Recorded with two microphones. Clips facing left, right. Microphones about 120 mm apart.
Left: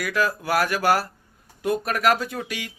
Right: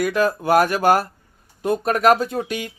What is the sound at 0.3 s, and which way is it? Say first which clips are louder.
Speech: right 7 dB; 25° right (ahead or behind).